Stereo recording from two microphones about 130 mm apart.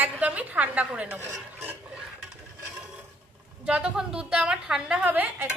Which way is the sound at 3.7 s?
5° right (ahead or behind).